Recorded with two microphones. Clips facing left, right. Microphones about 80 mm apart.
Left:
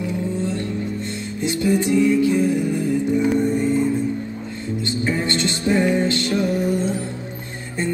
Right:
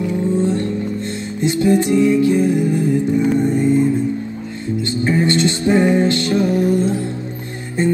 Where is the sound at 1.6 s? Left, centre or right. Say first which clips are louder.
Right 3 dB; centre.